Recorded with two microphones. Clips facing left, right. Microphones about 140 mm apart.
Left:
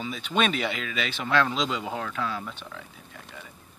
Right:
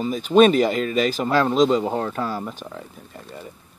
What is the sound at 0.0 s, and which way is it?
Speech, 40° right (ahead or behind).